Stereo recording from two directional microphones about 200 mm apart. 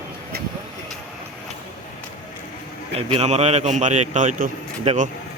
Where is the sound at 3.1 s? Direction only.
30° right (ahead or behind).